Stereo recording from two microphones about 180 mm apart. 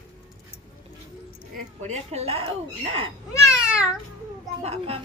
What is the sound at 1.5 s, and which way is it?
Speech, 40° right (ahead or behind).